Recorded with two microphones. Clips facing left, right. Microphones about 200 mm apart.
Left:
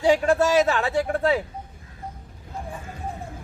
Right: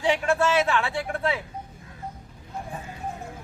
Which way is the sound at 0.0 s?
40° left (ahead or behind).